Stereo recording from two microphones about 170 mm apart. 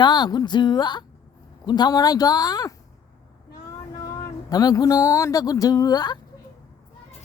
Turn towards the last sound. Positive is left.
turn(degrees=25)  # may be behind; listen again after turning